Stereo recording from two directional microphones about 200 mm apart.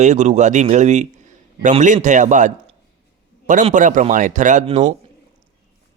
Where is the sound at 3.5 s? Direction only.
40° right (ahead or behind).